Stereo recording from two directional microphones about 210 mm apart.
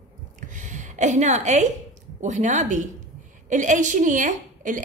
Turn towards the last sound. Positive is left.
turn(degrees=-40)  # may be behind; listen again after turning